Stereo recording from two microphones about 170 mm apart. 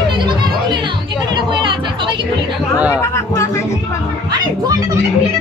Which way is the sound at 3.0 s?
15° left (ahead or behind).